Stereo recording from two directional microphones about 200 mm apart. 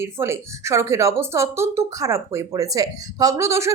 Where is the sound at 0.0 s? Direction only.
15° right (ahead or behind).